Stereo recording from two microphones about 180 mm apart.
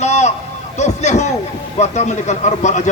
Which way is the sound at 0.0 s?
40° left (ahead or behind).